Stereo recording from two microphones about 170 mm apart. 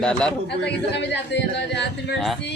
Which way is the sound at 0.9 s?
90° left.